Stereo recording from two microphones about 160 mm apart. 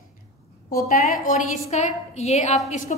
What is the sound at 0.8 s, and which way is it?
A woman's voice, 55° left (ahead or behind).